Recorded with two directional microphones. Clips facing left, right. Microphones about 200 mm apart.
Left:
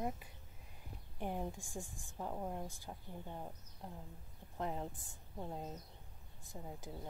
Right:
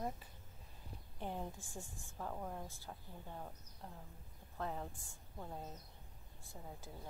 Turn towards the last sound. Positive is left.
turn(degrees=20)  # may be behind; listen again after turning